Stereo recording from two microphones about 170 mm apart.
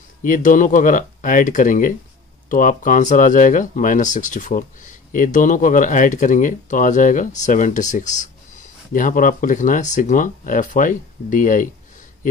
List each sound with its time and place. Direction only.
0.2 s speech: 50° left (ahead or behind)